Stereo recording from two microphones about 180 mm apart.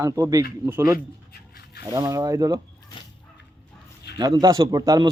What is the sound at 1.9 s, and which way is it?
Speech, 20° right (ahead or behind).